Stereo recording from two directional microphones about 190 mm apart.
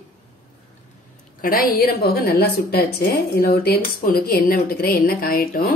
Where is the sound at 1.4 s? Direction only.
50° left (ahead or behind).